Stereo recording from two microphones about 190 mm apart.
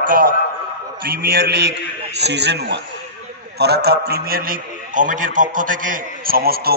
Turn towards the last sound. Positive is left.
turn(degrees=-55)  # may be behind; listen again after turning